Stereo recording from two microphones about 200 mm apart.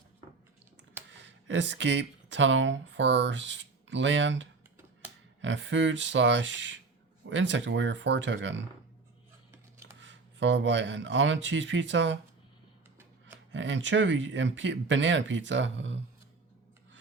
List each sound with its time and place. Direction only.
1.1 s speech: 65° right (ahead or behind)
10.0 s speech: 65° right (ahead or behind)
13.5 s speech: 65° right (ahead or behind)